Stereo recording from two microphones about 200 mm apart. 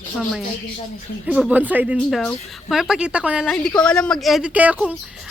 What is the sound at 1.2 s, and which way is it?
A woman's voice, 5° right (ahead or behind).